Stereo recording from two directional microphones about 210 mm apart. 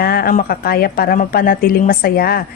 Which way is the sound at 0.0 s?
45° left (ahead or behind).